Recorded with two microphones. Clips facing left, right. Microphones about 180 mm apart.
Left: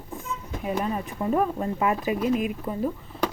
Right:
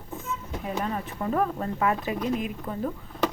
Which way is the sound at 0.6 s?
10° left (ahead or behind).